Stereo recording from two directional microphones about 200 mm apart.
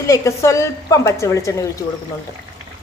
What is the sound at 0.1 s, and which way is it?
A woman's voice, 15° left (ahead or behind).